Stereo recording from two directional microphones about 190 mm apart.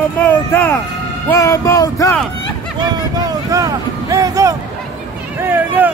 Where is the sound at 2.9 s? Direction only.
20° right (ahead or behind).